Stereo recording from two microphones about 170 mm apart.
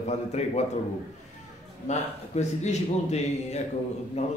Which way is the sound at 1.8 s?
40° left (ahead or behind).